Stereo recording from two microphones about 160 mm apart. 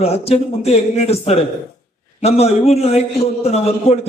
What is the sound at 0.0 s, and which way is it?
A man's voice, 40° left (ahead or behind).